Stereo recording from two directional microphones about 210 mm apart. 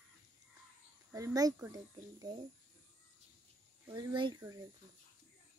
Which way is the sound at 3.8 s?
20° right (ahead or behind).